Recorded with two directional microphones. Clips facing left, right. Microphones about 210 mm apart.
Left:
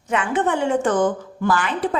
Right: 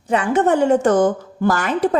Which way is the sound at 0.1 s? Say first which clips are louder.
Right 5 dB; 40° right (ahead or behind).